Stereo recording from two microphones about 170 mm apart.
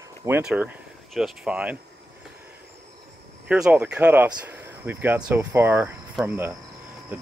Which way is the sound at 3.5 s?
5° right (ahead or behind).